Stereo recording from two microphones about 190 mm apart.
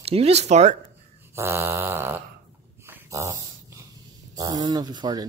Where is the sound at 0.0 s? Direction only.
35° right (ahead or behind).